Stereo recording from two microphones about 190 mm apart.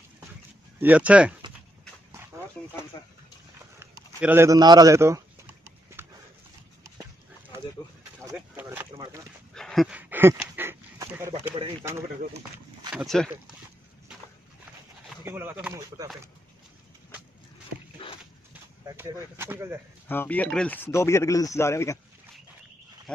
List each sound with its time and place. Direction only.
0.7 s speech: 10° right (ahead or behind)
3.8 s a sound: 10° right (ahead or behind)
8.3 s speech: 10° right (ahead or behind)
9.5 s a sound: centre (ahead or behind)
12.9 s speech: centre (ahead or behind)
15.2 s speech: 10° right (ahead or behind)
18.0 s dog: 25° left (ahead or behind)
18.5 s speech: 10° right (ahead or behind)
20.1 s speech: 10° left (ahead or behind)
23.1 s speech: 5° left (ahead or behind)